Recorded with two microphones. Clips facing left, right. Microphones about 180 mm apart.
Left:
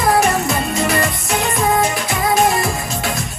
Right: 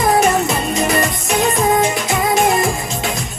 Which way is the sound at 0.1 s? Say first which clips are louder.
Even; 20° right (ahead or behind).